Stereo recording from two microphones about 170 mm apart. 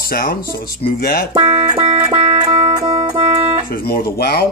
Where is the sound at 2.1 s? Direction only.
25° right (ahead or behind).